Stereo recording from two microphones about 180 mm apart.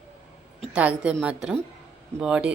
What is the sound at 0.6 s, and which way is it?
A woman's voice, 5° right (ahead or behind).